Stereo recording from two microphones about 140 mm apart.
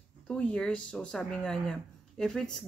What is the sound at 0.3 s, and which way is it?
Speech, 5° left (ahead or behind).